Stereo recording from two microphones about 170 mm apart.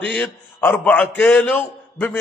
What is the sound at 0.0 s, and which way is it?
A man's voice, 10° left (ahead or behind).